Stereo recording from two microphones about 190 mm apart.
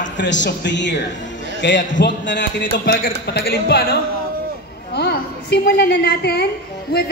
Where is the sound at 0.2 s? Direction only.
70° left (ahead or behind).